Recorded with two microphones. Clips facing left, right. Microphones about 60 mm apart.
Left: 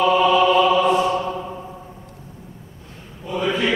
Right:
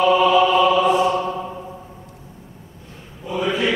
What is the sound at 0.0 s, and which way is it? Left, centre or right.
Music, centre.